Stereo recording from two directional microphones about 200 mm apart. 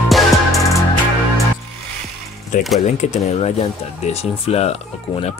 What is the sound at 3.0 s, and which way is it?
Speech, 35° left (ahead or behind).